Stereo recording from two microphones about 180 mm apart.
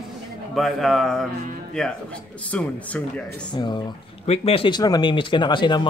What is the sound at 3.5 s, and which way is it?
Speech, 25° left (ahead or behind).